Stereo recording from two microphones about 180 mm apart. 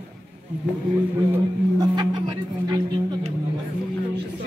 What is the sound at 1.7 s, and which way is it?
Speech, 25° right (ahead or behind).